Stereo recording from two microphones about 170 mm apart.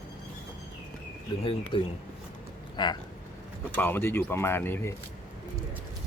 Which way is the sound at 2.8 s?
25° left (ahead or behind).